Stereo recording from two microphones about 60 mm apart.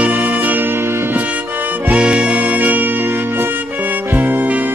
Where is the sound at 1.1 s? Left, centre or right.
Right.